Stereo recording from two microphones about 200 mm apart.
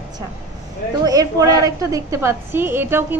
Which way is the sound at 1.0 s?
20° right (ahead or behind).